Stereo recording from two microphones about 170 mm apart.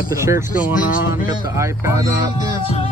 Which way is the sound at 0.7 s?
50° left (ahead or behind).